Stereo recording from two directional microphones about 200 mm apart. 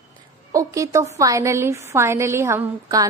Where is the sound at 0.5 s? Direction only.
15° right (ahead or behind).